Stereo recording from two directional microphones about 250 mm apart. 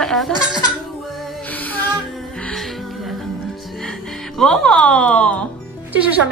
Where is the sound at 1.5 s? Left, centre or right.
Centre.